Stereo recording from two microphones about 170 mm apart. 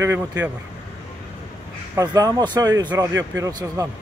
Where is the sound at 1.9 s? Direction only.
20° right (ahead or behind).